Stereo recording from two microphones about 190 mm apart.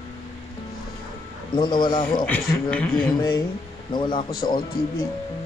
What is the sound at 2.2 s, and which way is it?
Speech, 5° left (ahead or behind).